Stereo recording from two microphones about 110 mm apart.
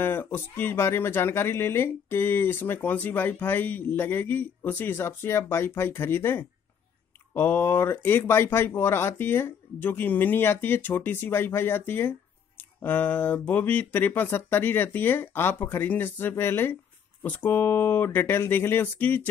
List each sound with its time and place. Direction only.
0.0 s speech: 20° left (ahead or behind)